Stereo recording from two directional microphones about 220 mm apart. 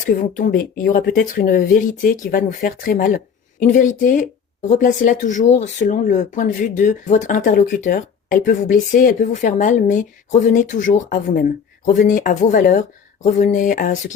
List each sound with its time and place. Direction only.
0.0 s speech: 35° left (ahead or behind)